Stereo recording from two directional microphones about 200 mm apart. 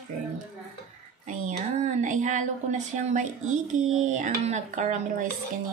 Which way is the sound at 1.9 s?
40° right (ahead or behind).